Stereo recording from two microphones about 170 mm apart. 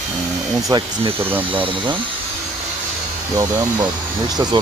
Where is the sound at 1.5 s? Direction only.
30° right (ahead or behind).